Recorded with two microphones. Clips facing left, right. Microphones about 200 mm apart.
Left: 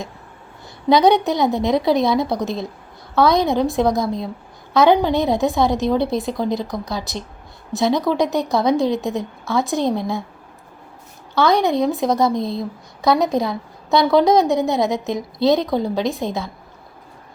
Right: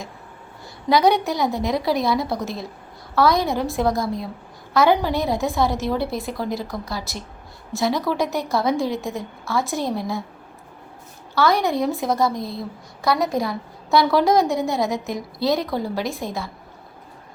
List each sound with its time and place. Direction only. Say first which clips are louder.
0.9 s a woman's voice: left 4 dB; 20° left (ahead or behind)
11.3 s a woman's voice: left 3 dB; 20° left (ahead or behind)